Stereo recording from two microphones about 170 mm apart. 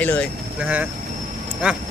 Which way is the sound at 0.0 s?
5° left (ahead or behind).